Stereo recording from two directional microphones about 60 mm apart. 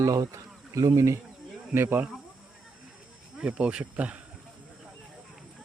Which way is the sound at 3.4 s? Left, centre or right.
Centre.